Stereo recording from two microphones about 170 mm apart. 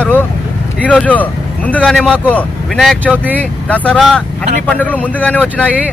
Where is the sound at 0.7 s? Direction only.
10° left (ahead or behind).